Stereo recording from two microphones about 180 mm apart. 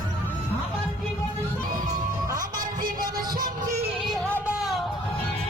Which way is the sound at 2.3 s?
50° right (ahead or behind).